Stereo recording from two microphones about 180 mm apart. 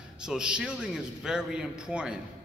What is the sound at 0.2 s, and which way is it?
A man's voice, 5° right (ahead or behind).